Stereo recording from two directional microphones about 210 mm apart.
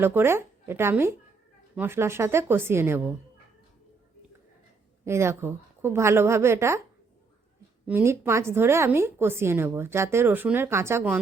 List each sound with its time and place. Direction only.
0.0 s a woman's voice: 10° right (ahead or behind)
5.0 s a woman's voice: 10° right (ahead or behind)
7.9 s a woman's voice: 10° right (ahead or behind)